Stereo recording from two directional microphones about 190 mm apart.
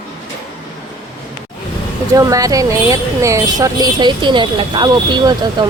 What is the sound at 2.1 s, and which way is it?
Speech, 15° right (ahead or behind).